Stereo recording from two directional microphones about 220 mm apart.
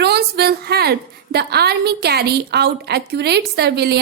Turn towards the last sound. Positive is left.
turn(degrees=-45)  # may be behind; listen again after turning